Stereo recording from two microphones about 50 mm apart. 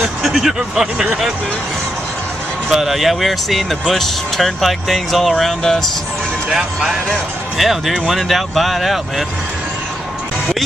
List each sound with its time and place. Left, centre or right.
0.0 s speech: centre
2.7 s speech: centre
6.5 s speech: centre